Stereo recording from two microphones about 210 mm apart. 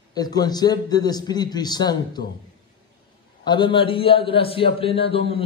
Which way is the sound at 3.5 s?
20° left (ahead or behind).